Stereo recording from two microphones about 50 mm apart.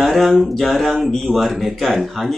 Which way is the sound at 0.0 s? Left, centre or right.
Centre.